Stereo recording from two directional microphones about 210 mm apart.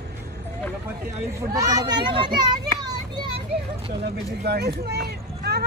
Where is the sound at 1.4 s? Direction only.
15° right (ahead or behind).